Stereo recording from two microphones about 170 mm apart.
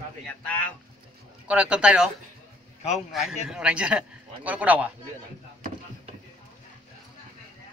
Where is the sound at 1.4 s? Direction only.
5° right (ahead or behind).